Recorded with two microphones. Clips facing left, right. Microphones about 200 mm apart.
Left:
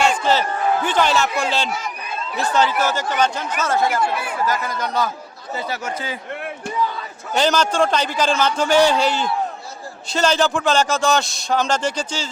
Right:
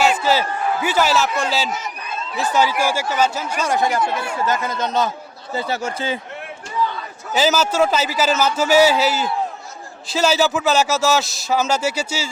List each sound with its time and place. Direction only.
0.0 s a man's voice: 5° right (ahead or behind); by 6.1 s 25° right (ahead or behind)
7.3 s a man's voice: 5° right (ahead or behind)